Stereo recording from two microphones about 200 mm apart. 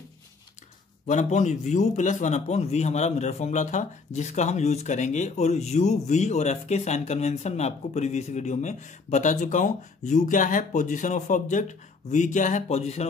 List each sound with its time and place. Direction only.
1.0 s a man's voice: 35° left (ahead or behind)